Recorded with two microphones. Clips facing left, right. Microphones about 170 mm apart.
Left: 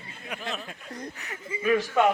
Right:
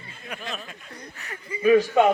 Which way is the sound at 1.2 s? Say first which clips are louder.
Even; 20° left (ahead or behind).